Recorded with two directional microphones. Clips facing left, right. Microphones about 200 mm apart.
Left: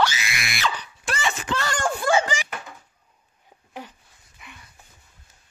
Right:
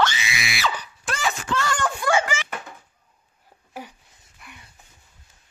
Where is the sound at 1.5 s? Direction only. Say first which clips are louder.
Even; 35° left (ahead or behind).